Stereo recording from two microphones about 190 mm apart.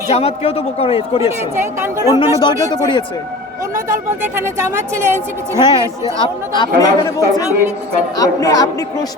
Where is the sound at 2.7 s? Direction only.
25° left (ahead or behind).